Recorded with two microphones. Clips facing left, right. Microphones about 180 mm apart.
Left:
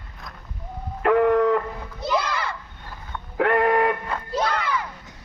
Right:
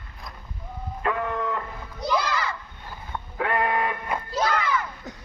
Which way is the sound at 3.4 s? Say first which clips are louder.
Left 6 dB; 70° left (ahead or behind).